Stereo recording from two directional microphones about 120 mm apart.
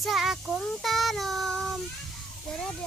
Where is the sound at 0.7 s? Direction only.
Centre (ahead or behind).